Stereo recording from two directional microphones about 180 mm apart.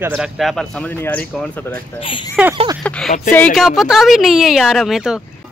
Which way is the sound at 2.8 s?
5° left (ahead or behind).